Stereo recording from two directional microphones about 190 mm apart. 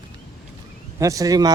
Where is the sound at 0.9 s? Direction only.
15° right (ahead or behind).